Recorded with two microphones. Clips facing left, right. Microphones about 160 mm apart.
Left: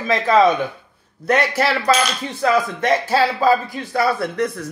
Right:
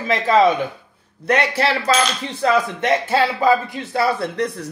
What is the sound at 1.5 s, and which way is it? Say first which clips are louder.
A man's voice: left 1 dB; 30° right (ahead or behind).